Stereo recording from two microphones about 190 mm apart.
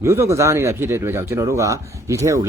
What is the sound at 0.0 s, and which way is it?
Speech, 15° right (ahead or behind).